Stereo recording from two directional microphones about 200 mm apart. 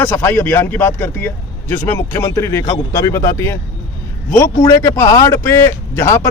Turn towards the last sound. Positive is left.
turn(degrees=15)  # may be behind; listen again after turning